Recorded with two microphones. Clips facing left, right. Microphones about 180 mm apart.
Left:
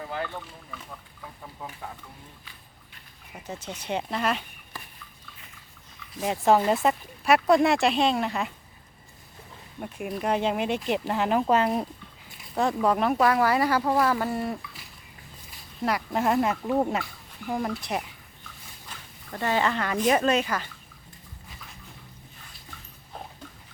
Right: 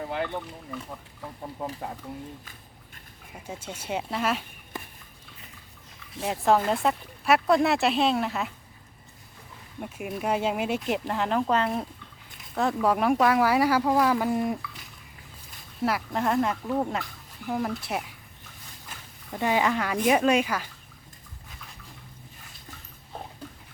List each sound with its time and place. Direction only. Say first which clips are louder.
0.1 s speech: right 3 dB; 20° right (ahead or behind)
3.4 s speech: left 1 dB; 10° right (ahead or behind)
6.2 s speech: left 2 dB; centre (ahead or behind)
9.8 s speech: left 1 dB; centre (ahead or behind)
15.8 s speech: left 1 dB; centre (ahead or behind)
18.9 s a sound: right 1 dB; 10° right (ahead or behind)
20.1 s speech: right 1 dB; 10° right (ahead or behind)